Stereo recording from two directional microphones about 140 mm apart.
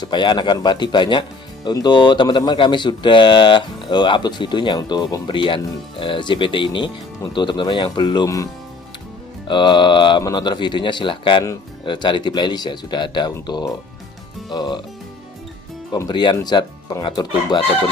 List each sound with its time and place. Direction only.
0.0 s speech: 35° left (ahead or behind)
9.5 s speech: 35° left (ahead or behind)
16.1 s speech: 35° left (ahead or behind)